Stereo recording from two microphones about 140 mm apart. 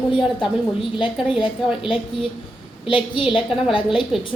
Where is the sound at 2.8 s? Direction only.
35° left (ahead or behind).